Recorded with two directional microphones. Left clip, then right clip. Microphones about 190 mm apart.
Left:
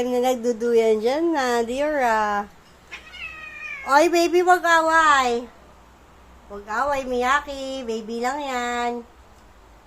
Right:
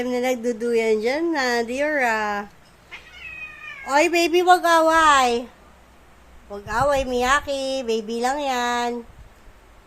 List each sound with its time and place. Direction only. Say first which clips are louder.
0.0 s speech: left 2 dB; 5° right (ahead or behind)
3.8 s speech: left 1 dB; 5° right (ahead or behind)
4.3 s a woman's voice: right 1 dB; 20° right (ahead or behind)
6.5 s a woman's voice: right 3 dB; 25° right (ahead or behind)